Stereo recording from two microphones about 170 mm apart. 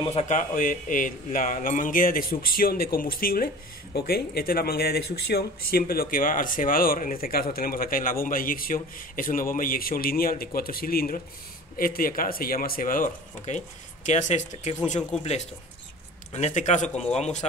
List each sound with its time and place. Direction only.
0.0 s speech: 40° left (ahead or behind)